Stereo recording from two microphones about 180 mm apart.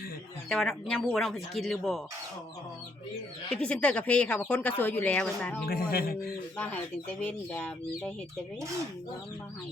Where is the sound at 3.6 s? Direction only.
5° left (ahead or behind).